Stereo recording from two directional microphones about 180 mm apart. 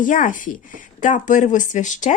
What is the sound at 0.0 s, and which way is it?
Speech, 45° left (ahead or behind).